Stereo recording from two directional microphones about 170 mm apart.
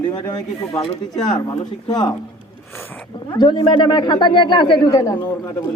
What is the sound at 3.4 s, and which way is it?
Speech, 25° left (ahead or behind).